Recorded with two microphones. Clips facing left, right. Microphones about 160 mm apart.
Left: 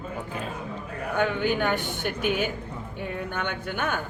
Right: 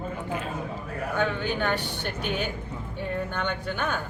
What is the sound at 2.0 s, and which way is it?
Speech, 10° left (ahead or behind).